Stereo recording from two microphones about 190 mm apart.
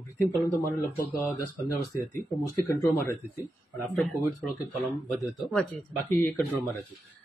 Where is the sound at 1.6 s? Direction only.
15° left (ahead or behind).